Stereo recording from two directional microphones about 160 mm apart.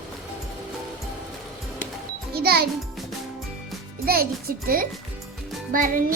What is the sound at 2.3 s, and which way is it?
Music, 75° right (ahead or behind).